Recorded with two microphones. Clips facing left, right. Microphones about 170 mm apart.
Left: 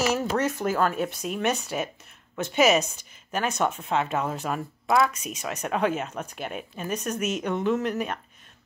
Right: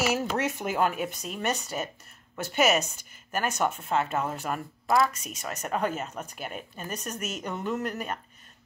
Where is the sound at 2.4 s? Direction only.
5° right (ahead or behind).